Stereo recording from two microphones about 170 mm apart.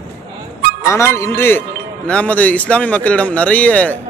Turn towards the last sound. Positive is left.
turn(degrees=10)  # may be behind; listen again after turning